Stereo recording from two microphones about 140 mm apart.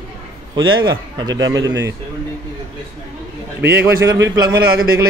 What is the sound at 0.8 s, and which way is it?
A man's voice, 30° right (ahead or behind).